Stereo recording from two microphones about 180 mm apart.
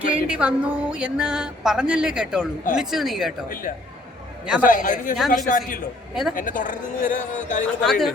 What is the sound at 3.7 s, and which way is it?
Speech, 50° left (ahead or behind).